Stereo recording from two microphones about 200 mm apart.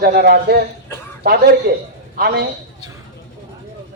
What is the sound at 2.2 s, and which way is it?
Speech, 50° right (ahead or behind).